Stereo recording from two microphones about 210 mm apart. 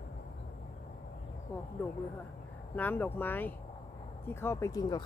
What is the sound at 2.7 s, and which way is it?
Speech, 10° left (ahead or behind).